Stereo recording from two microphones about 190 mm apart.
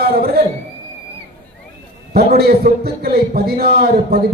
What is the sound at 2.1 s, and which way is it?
A man's voice, 55° right (ahead or behind).